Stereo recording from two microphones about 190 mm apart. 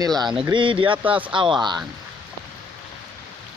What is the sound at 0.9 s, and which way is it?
Speech, 5° right (ahead or behind).